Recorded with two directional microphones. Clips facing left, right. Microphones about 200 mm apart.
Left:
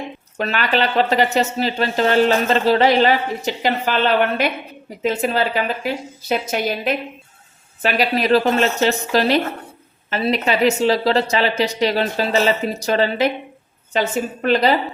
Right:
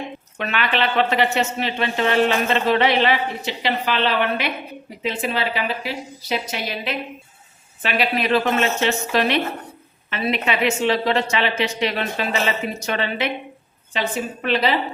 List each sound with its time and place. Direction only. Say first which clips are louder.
0.3 s a woman's voice: left 3 dB; 40° left (ahead or behind)